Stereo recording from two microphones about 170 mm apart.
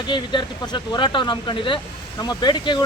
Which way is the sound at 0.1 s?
25° left (ahead or behind).